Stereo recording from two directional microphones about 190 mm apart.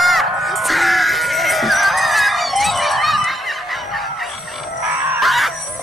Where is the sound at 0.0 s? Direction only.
Centre (ahead or behind).